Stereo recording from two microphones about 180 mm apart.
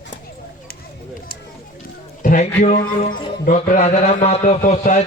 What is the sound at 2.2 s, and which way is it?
A man's voice, 45° left (ahead or behind).